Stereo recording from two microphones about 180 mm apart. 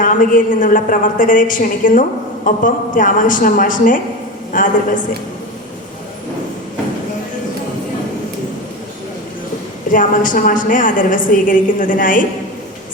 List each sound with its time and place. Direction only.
0.0 s a woman's voice: 50° left (ahead or behind)
9.9 s a woman's voice: 45° left (ahead or behind)